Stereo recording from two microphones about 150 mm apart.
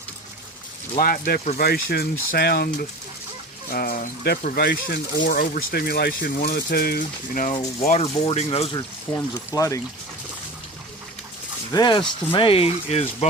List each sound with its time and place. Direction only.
0.9 s speech: 65° left (ahead or behind); by 2.8 s 90° left
3.7 s speech: 75° left (ahead or behind)
7.8 s speech: 45° left (ahead or behind)
8.7 s speech: 25° left (ahead or behind)
11.7 s speech: 30° left (ahead or behind)